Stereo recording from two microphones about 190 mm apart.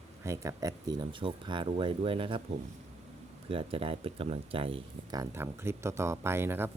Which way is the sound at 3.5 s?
30° right (ahead or behind).